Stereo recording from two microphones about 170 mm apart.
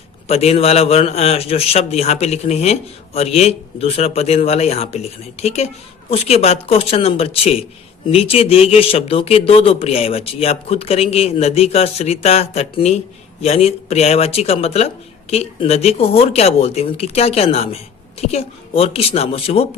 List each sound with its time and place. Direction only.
0.3 s speech: 35° left (ahead or behind)